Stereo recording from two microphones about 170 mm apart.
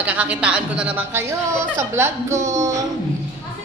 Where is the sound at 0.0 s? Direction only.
10° right (ahead or behind).